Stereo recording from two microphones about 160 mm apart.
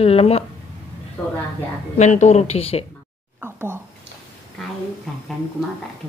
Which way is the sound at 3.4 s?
15° right (ahead or behind).